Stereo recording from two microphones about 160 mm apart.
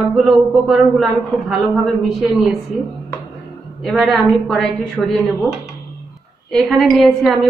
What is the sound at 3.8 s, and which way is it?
A woman's voice, centre (ahead or behind).